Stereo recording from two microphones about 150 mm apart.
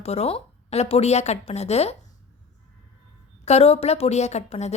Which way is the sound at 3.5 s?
45° left (ahead or behind).